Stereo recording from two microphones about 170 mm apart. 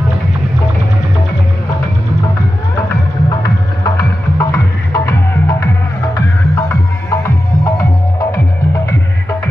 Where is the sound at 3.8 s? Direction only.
20° left (ahead or behind).